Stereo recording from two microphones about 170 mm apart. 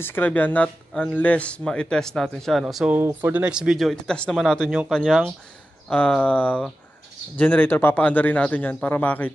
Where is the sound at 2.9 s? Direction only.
10° right (ahead or behind); by 9.3 s 10° left (ahead or behind).